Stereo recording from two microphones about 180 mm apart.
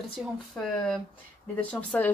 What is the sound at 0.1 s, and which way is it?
Speech, centre (ahead or behind).